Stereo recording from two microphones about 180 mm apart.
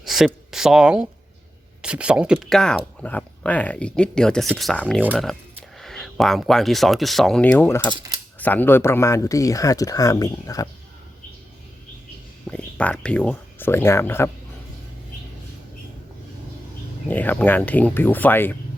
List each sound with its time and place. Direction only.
0.0 s speech: centre (ahead or behind); by 10.7 s 20° left (ahead or behind)
12.5 s speech: 5° left (ahead or behind)
17.1 s speech: 10° left (ahead or behind)